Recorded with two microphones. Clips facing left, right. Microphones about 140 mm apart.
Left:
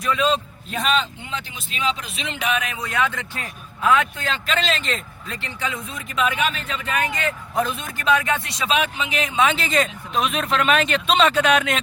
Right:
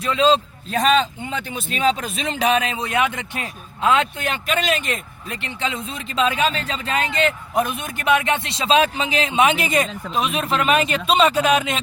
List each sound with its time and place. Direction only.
0.0 s speech: 25° right (ahead or behind)
0.8 s speech: 40° right (ahead or behind)
9.3 s speech: 20° right (ahead or behind)
10.2 s speech: centre (ahead or behind)